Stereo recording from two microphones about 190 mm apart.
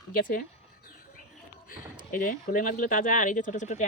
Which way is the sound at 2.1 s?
45° left (ahead or behind).